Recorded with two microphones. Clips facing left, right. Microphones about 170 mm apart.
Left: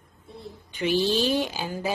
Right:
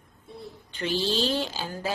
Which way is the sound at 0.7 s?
15° left (ahead or behind).